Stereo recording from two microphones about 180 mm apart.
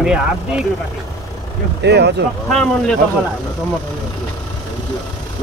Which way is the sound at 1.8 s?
70° right (ahead or behind).